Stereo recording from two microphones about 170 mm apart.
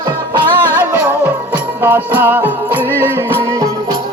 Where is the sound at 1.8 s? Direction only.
10° right (ahead or behind).